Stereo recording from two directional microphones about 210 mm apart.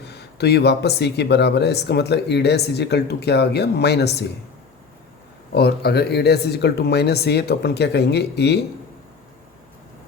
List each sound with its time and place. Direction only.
0.0 s speech: 50° left (ahead or behind)
5.5 s speech: 50° left (ahead or behind)